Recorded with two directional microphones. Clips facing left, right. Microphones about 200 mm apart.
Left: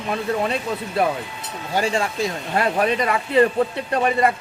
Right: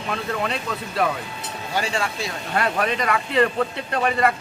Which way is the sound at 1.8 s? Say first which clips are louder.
Left 5 dB; 45° left (ahead or behind).